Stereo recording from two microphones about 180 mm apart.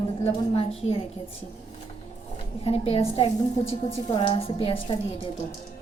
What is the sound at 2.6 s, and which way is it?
A woman's voice, 35° left (ahead or behind).